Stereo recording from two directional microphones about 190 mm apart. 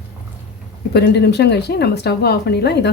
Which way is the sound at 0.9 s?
60° left (ahead or behind).